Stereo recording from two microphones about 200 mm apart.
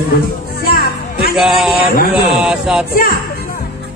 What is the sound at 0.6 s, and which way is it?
Music, 50° left (ahead or behind).